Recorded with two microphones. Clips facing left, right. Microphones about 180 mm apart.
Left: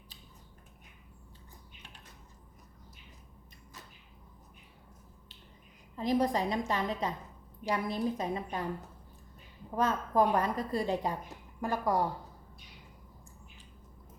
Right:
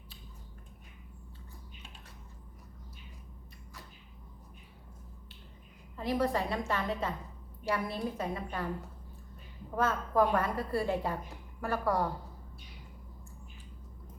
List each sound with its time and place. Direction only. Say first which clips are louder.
6.0 s a woman's voice: left 2 dB; 20° left (ahead or behind)
9.7 s a woman's voice: even; 20° left (ahead or behind)